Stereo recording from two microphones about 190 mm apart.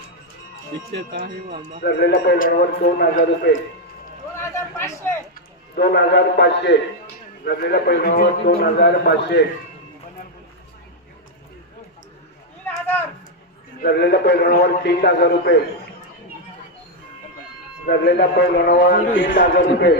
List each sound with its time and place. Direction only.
1.5 s speech: 30° right (ahead or behind)
1.8 s a man's voice: 60° left (ahead or behind)
4.4 s speech: 15° left (ahead or behind)
5.7 s a man's voice: 55° left (ahead or behind)
12.6 s a sound: 10° left (ahead or behind)
13.8 s a man's voice: 60° left (ahead or behind)
17.8 s a man's voice: 55° left (ahead or behind)
19.1 s a man's voice: 45° left (ahead or behind)